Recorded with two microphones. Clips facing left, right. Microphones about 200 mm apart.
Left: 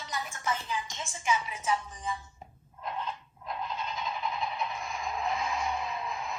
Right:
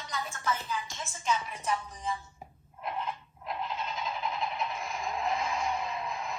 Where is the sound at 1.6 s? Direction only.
Centre (ahead or behind).